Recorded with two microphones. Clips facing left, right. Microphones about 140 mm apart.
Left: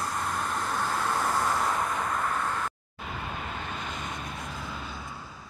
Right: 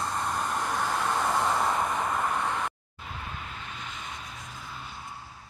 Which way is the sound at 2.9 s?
65° left (ahead or behind).